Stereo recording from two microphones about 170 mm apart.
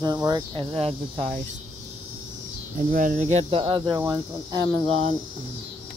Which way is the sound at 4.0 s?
25° right (ahead or behind).